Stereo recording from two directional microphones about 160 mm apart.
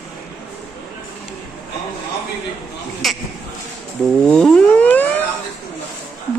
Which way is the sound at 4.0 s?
5° left (ahead or behind).